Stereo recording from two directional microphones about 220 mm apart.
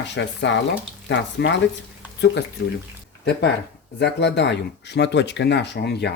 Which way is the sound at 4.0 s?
50° left (ahead or behind).